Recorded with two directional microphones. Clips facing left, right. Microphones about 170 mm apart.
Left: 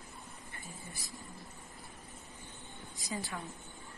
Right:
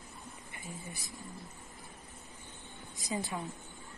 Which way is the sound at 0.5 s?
20° right (ahead or behind).